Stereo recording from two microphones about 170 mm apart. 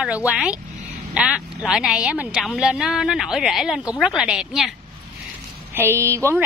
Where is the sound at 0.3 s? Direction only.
5° right (ahead or behind).